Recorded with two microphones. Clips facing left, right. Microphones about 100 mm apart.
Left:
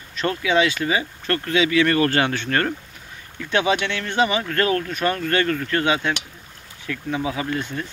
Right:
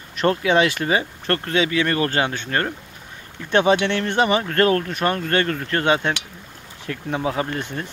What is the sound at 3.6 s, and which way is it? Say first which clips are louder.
Speech: right 4 dB; 35° right (ahead or behind).